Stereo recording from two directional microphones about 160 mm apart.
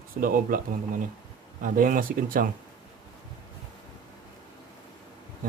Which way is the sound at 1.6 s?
60° right (ahead or behind).